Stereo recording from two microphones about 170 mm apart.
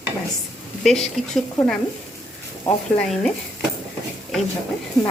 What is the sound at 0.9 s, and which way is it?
Speech, centre (ahead or behind).